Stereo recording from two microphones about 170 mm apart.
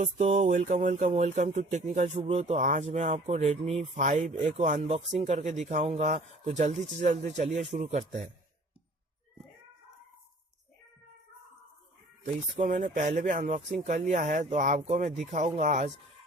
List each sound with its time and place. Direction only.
0.0 s speech: 40° right (ahead or behind)
12.5 s speech: 50° right (ahead or behind)